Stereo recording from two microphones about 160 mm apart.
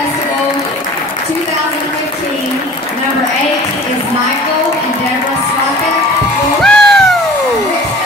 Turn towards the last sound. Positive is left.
turn(degrees=5)  # may be behind; listen again after turning